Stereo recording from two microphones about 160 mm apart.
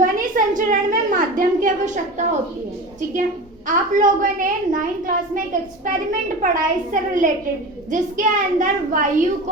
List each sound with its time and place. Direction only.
0.0 s a woman's voice: 55° right (ahead or behind)
3.7 s a child's voice: 55° right (ahead or behind)